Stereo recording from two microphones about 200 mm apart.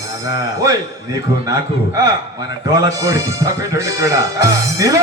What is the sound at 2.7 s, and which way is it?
Speech, 15° right (ahead or behind).